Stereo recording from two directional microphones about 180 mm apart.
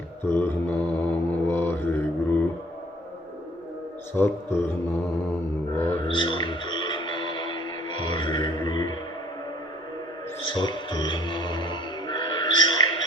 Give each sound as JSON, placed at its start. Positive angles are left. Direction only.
{"t": 0.3, "sound": "mantra", "side_deg": 15}
{"t": 4.2, "sound": "a man's voice", "side_deg": 15}
{"t": 5.7, "sound": "a man's voice", "side_deg": 15}
{"t": 6.1, "sound": "music", "side_deg": 25}
{"t": 10.5, "sound": "music", "side_deg": 25}